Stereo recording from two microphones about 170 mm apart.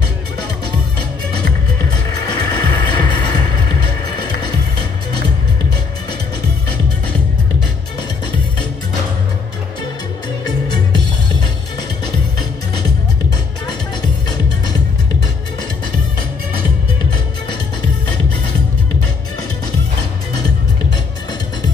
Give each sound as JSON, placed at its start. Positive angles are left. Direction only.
{"t": 1.8, "sound": "music", "side_deg": 20}